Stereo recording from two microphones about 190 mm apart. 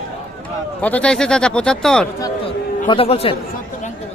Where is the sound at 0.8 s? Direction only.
10° left (ahead or behind).